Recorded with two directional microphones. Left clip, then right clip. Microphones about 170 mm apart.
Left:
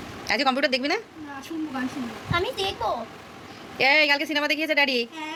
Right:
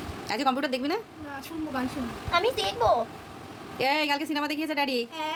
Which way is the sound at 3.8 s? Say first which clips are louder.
Left 6 dB; 5° left (ahead or behind).